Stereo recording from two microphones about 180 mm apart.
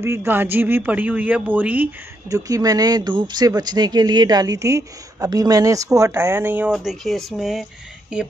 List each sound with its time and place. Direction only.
0.0 s speech: 15° right (ahead or behind)